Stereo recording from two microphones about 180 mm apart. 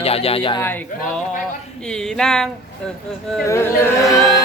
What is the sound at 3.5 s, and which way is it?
Chant, 15° left (ahead or behind).